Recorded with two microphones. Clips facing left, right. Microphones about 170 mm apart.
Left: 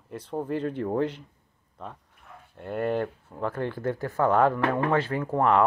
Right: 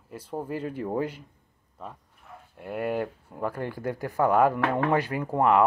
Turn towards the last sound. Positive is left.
turn(degrees=-10)  # may be behind; listen again after turning